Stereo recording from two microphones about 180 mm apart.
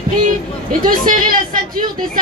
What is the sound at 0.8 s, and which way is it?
A woman's voice, 50° right (ahead or behind).